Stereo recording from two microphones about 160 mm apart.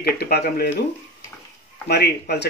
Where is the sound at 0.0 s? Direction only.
75° left (ahead or behind).